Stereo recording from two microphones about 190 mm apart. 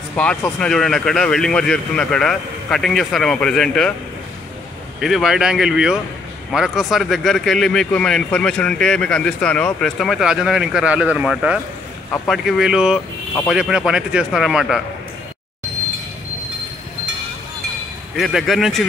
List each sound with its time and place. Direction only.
0.1 s speech: 10° left (ahead or behind)
5.0 s speech: centre (ahead or behind)
18.1 s speech: centre (ahead or behind)